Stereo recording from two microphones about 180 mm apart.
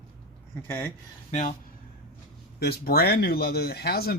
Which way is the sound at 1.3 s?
40° left (ahead or behind).